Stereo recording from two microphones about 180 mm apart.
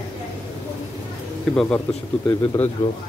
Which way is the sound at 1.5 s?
5° left (ahead or behind).